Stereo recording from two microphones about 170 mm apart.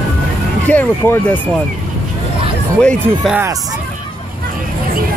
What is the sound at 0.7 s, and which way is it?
Speech, 10° left (ahead or behind).